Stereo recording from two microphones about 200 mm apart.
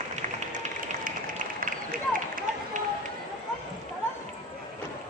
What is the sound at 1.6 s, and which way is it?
Run, 45° right (ahead or behind).